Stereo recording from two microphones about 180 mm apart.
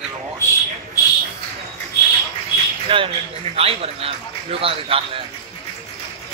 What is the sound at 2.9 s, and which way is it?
A man's voice, 30° right (ahead or behind).